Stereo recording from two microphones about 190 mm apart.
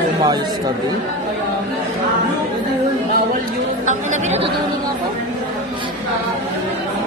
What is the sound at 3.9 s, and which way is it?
Speech, 40° right (ahead or behind).